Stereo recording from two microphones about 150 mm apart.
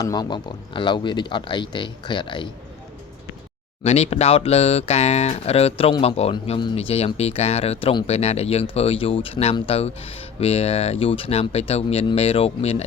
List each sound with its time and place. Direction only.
0.0 s speech: 25° left (ahead or behind)
3.8 s speech: 45° left (ahead or behind)
6.3 s speech: 30° left (ahead or behind)